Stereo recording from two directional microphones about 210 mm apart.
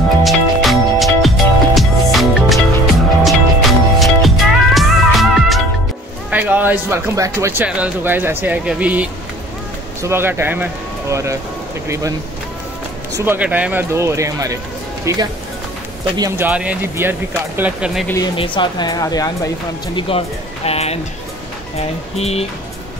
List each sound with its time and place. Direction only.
0.2 s music: centre (ahead or behind)
6.3 s speech: 10° right (ahead or behind)
13.1 s speech: 10° right (ahead or behind)
18.0 s speech: 15° left (ahead or behind)